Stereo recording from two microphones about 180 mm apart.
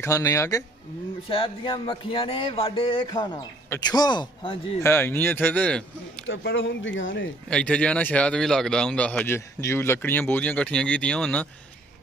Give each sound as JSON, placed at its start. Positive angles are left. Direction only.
{"t": 0.0, "sound": "speech", "side_deg": 20}
{"t": 1.3, "sound": "speech", "side_deg": 30}
{"t": 4.8, "sound": "speech", "side_deg": 15}
{"t": 6.2, "sound": "speech", "side_deg": 90}
{"t": 7.4, "sound": "speech", "side_deg": 5}